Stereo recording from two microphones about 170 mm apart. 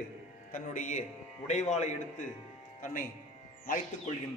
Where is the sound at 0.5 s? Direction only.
45° left (ahead or behind).